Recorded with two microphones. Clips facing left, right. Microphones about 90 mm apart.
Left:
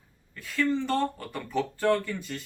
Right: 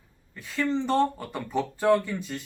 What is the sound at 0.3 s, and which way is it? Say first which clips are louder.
A man's voice: even; 20° right (ahead or behind).